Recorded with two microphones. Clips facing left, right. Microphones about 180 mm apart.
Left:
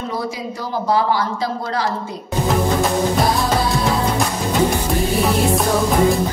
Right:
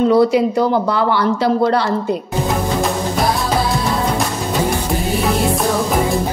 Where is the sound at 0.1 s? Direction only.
70° right (ahead or behind).